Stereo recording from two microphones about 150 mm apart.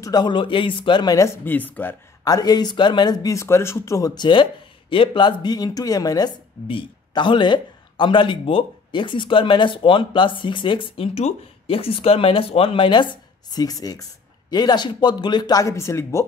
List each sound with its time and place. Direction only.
0.0 s speech: 30° left (ahead or behind); by 2.0 s 10° left (ahead or behind)
2.2 s speech: 25° left (ahead or behind)